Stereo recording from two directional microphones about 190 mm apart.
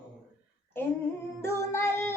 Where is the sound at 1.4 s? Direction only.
15° left (ahead or behind).